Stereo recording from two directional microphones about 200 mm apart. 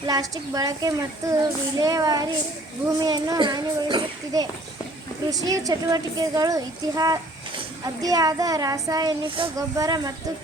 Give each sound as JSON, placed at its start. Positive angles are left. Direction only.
{"t": 0.0, "sound": "a child's voice", "side_deg": -15}